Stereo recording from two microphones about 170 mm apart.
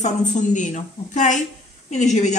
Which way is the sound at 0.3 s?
45° left (ahead or behind).